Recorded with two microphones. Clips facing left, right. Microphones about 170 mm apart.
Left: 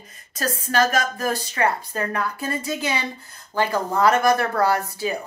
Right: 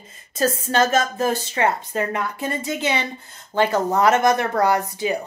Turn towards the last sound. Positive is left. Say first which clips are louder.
# right 2 dB
turn(degrees=-20)  # may be behind; listen again after turning